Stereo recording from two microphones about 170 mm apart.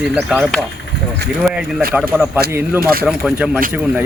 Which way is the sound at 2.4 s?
70° right (ahead or behind).